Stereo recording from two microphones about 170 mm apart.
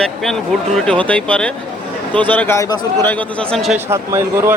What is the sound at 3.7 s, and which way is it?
Speech, 15° right (ahead or behind).